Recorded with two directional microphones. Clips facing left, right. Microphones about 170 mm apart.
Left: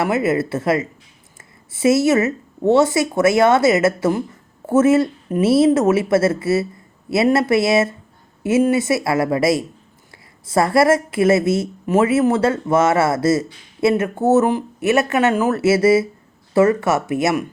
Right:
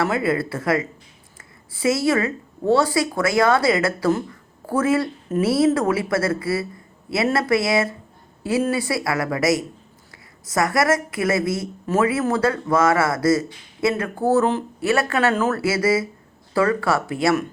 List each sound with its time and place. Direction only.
0.0 s a woman's voice: 20° left (ahead or behind)